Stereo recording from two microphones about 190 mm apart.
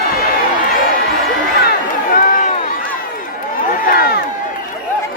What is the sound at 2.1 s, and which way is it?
Crowd, 45° left (ahead or behind).